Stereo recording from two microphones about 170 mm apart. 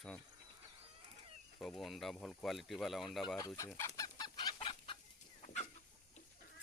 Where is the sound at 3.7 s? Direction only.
20° left (ahead or behind).